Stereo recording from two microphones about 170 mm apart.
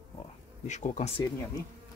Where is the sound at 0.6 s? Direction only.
45° left (ahead or behind).